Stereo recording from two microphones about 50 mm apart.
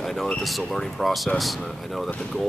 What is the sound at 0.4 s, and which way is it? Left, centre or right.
Speech, centre.